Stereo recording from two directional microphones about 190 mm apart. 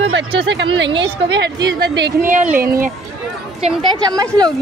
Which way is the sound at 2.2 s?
40° right (ahead or behind).